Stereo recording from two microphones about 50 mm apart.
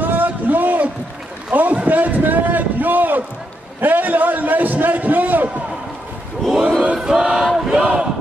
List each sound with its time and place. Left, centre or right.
0.0 s a sound: right
3.8 s a man's voice: right
7.0 s chant: centre
7.8 s basketball bounce: right